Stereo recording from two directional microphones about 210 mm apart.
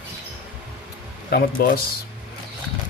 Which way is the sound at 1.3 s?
45° left (ahead or behind).